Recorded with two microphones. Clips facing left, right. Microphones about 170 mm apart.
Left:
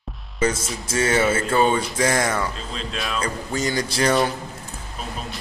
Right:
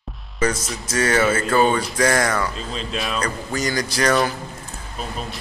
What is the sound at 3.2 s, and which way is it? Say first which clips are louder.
Speech: even; 25° left (ahead or behind).